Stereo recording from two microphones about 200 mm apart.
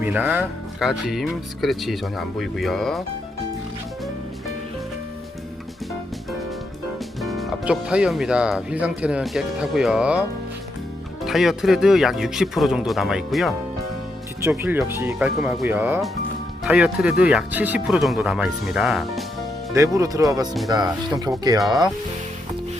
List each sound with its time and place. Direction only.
0.0 s speech: 10° right (ahead or behind)
7.2 s speech: centre (ahead or behind)
11.3 s speech: centre (ahead or behind)
19.7 s speech: 15° right (ahead or behind)